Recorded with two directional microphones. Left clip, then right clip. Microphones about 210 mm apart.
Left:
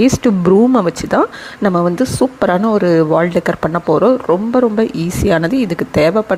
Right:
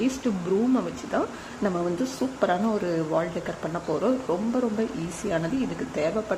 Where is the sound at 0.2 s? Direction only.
40° left (ahead or behind).